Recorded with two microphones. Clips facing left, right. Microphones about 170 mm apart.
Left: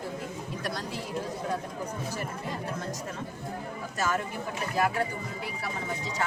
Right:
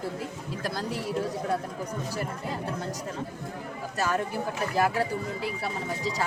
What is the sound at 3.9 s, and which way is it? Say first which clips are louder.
Speech: right 2 dB; 35° right (ahead or behind).